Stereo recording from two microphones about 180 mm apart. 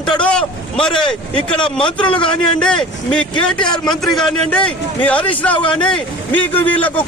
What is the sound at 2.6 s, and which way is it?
A man's voice, 5° left (ahead or behind).